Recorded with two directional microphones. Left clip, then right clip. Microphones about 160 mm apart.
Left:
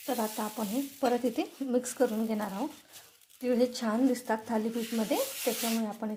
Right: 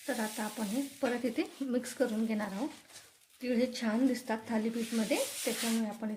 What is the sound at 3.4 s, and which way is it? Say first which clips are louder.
Stir: left 4 dB; 15° left (ahead or behind).